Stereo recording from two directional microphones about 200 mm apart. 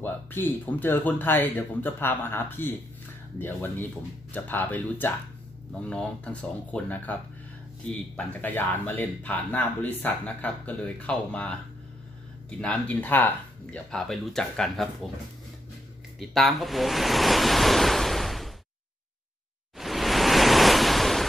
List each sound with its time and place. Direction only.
0.0 s speech: 10° left (ahead or behind)
8.2 s speech: 10° left (ahead or behind)
16.2 s speech: centre (ahead or behind)
19.8 s waves: centre (ahead or behind)